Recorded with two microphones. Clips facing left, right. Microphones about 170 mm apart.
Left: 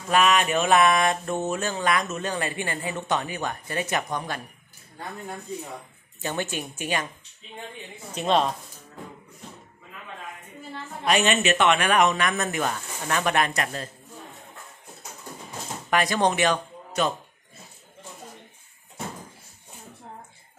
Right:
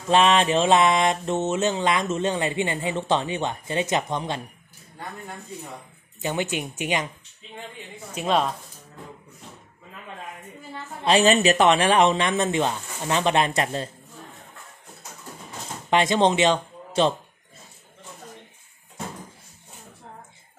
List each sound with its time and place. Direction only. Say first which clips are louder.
0.1 s mantra: right 3 dB; 25° right (ahead or behind)
6.2 s speech: right 3 dB; 15° right (ahead or behind)
8.1 s speech: even; 5° right (ahead or behind)
11.1 s mantra: right 4 dB; 35° right (ahead or behind)
15.9 s speech: right 3 dB; 25° right (ahead or behind)